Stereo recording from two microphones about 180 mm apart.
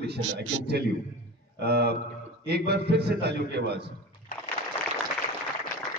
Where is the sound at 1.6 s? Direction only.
65° right (ahead or behind).